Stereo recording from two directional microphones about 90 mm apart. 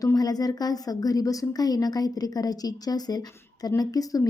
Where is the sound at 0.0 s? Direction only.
45° left (ahead or behind).